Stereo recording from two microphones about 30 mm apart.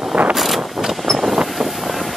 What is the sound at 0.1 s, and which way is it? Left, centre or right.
Vehicle, right.